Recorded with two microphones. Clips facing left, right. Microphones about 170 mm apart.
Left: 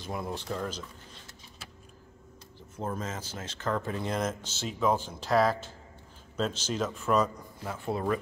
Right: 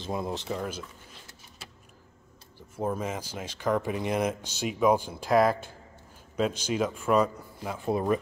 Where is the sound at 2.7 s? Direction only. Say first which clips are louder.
Right 4 dB; 10° right (ahead or behind).